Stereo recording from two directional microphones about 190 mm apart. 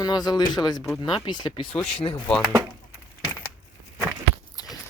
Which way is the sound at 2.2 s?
5° left (ahead or behind).